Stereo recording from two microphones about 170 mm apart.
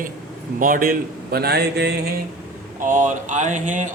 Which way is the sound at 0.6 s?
55° right (ahead or behind).